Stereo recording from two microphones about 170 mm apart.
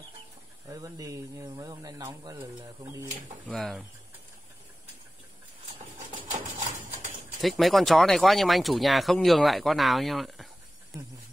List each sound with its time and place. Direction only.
0.7 s speech: 20° right (ahead or behind)
3.4 s speech: centre (ahead or behind)
7.4 s speech: centre (ahead or behind)